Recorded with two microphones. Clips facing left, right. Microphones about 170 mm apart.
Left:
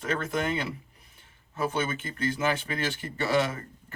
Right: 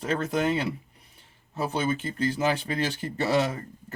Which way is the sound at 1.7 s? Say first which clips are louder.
Right 3 dB; 35° right (ahead or behind).